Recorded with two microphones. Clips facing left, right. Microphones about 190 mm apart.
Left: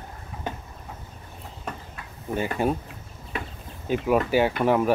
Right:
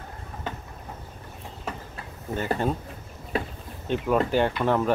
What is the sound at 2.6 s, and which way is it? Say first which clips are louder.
Speech: left 4 dB; 10° left (ahead or behind).